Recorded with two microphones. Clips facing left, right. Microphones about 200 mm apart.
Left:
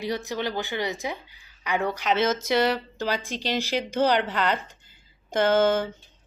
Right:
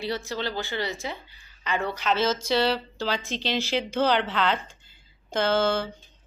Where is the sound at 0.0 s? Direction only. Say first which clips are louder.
Left 1 dB; 15° left (ahead or behind).